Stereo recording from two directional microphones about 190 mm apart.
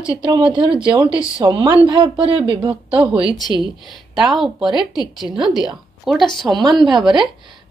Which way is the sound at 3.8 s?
Centre (ahead or behind).